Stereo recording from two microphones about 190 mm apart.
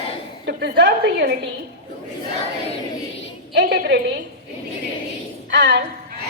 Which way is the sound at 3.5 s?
65° right (ahead or behind).